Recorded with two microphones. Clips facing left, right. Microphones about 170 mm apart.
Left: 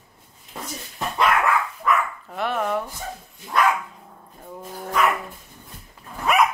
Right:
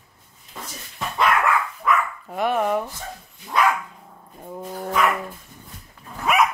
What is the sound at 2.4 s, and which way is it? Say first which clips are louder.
Dog: right 3 dB; 10° right (ahead or behind).